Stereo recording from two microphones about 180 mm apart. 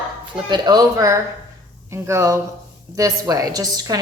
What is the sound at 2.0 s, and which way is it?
Speech, 15° right (ahead or behind).